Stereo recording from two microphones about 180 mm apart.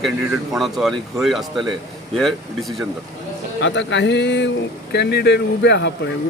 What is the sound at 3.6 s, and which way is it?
Speech, 90° left.